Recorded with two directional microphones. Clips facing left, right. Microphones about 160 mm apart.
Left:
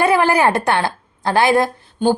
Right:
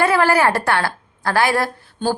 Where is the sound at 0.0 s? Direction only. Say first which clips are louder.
Left 1 dB; 20° left (ahead or behind).